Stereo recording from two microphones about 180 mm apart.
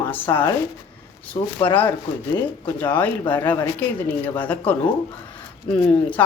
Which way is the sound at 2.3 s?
10° left (ahead or behind).